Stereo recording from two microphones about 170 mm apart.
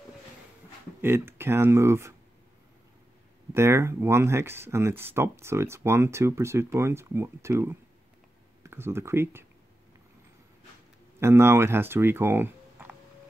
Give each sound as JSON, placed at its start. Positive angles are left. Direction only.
{"t": 1.0, "sound": "speech", "side_deg": -15}
{"t": 3.5, "sound": "speech", "side_deg": -15}
{"t": 11.1, "sound": "speech", "side_deg": -15}